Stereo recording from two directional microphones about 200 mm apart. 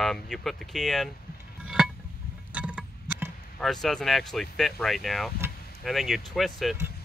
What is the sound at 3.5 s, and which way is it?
Speech, centre (ahead or behind).